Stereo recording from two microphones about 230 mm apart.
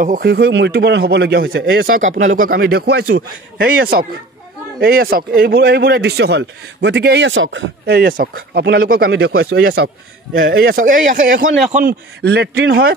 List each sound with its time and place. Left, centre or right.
0.0 s speech: right
1.9 s speech: right
9.5 s speech: right
10.4 s speech: right